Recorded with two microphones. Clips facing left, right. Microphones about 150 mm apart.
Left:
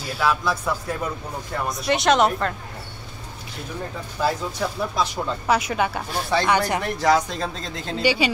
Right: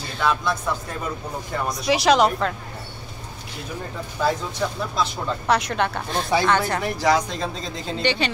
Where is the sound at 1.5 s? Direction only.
Centre (ahead or behind).